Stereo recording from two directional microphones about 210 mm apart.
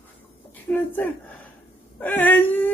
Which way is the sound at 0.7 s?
10° left (ahead or behind).